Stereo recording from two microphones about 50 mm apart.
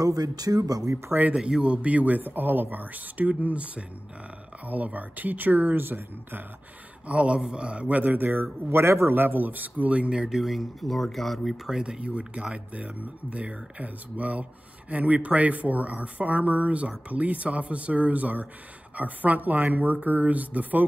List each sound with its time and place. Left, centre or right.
0.6 s speech: right
1.6 s speech: right
7.1 s speech: right
7.9 s speech: right
8.6 s speech: right; by 11.8 s centre
11.8 s speech: centre